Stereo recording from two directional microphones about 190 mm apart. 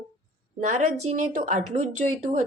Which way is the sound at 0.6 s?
40° right (ahead or behind).